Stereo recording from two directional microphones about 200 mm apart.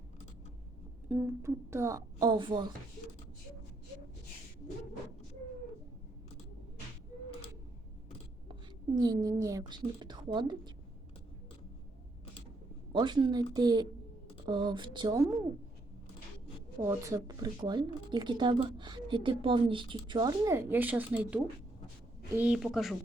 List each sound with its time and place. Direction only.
1.0 s speech: 10° right (ahead or behind)
8.4 s speech: 25° right (ahead or behind)
12.9 s speech: 20° right (ahead or behind)
16.8 s a woman's voice: 15° right (ahead or behind)